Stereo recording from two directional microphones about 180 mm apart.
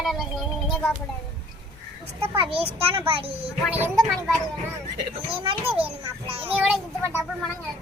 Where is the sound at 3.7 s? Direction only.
10° right (ahead or behind).